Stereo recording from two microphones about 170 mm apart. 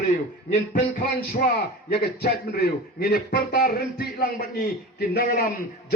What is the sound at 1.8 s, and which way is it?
A man's voice, 65° left (ahead or behind).